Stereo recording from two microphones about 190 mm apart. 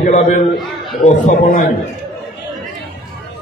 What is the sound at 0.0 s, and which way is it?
A man's voice, 40° left (ahead or behind).